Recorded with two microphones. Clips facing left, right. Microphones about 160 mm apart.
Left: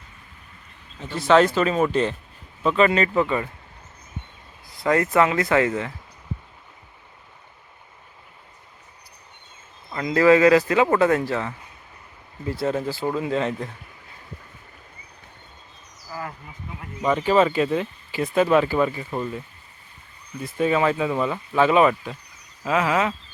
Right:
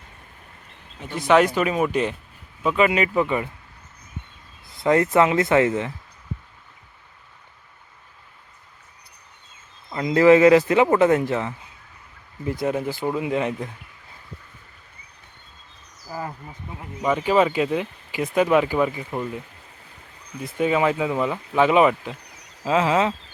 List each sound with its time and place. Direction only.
0.9 s speech: 15° right (ahead or behind)
4.7 s speech: 25° right (ahead or behind)
9.9 s speech: 20° right (ahead or behind)
16.8 s speech: 10° right (ahead or behind)
20.4 s speech: 15° right (ahead or behind)